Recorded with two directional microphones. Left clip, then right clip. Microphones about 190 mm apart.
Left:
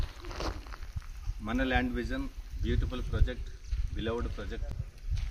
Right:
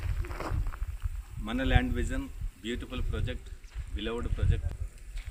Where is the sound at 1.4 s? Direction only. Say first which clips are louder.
Left 1 dB; 15° right (ahead or behind); by 4.5 s 30° right (ahead or behind).